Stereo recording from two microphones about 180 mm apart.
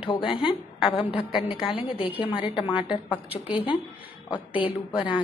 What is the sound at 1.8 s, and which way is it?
A woman's voice, 30° left (ahead or behind).